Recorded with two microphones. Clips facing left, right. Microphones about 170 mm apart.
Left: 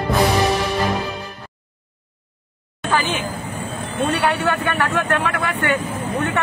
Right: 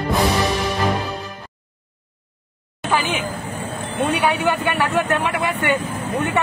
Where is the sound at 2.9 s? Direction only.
10° right (ahead or behind).